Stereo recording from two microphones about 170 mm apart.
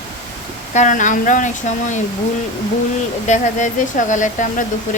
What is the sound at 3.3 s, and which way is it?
Speech, 45° left (ahead or behind).